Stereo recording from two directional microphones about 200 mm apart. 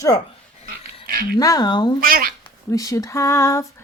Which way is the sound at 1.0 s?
45° right (ahead or behind).